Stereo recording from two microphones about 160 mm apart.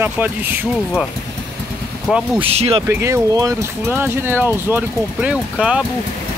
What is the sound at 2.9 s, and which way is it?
Speech, 15° right (ahead or behind).